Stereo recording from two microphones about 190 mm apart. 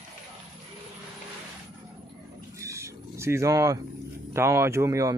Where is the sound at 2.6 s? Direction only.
15° right (ahead or behind).